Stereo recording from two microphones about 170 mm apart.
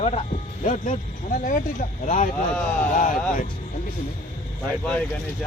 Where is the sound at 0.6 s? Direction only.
50° left (ahead or behind).